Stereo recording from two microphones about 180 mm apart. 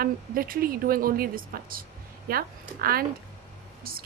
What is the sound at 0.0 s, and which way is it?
A woman's voice, 55° right (ahead or behind).